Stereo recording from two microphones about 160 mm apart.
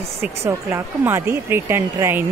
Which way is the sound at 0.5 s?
20° right (ahead or behind).